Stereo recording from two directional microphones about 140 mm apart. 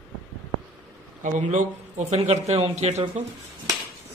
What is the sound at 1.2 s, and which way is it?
A man's voice, 60° right (ahead or behind).